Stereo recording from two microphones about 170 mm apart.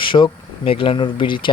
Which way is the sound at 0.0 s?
30° left (ahead or behind).